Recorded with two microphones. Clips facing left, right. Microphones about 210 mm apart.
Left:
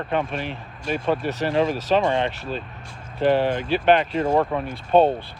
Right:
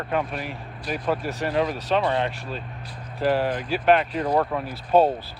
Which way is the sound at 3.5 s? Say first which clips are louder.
Left 3 dB; 25° left (ahead or behind).